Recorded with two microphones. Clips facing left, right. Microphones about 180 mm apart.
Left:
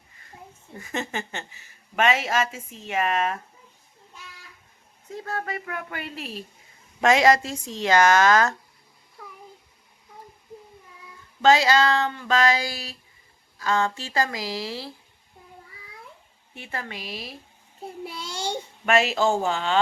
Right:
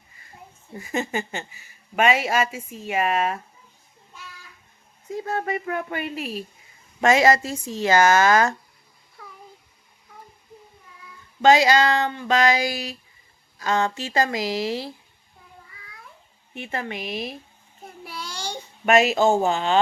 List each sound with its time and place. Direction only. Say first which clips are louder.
0.7 s speech: right 4 dB; 10° right (ahead or behind)
5.1 s speech: right 5 dB; 20° right (ahead or behind)
7.0 s a woman's voice: right 1 dB; centre (ahead or behind)
11.4 s speech: right 2 dB; 15° right (ahead or behind)
16.6 s speech: right 5 dB; 20° right (ahead or behind)
17.8 s a sound: left 2 dB; 25° left (ahead or behind)
18.9 s speech: right 4 dB; 20° right (ahead or behind)